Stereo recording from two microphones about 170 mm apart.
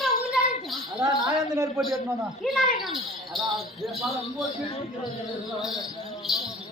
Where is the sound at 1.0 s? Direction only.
25° right (ahead or behind).